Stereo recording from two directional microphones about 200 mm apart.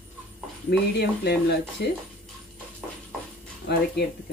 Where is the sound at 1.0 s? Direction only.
55° left (ahead or behind).